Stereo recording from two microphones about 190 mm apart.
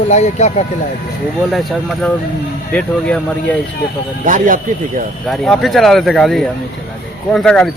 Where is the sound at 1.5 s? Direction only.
Centre (ahead or behind).